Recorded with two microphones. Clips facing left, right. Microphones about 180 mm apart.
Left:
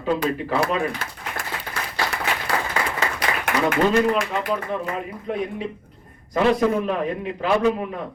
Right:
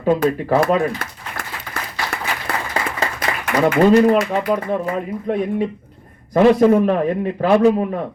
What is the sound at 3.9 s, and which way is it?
Speech, 40° right (ahead or behind).